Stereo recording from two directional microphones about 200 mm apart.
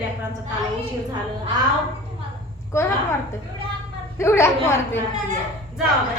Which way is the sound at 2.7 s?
15° left (ahead or behind).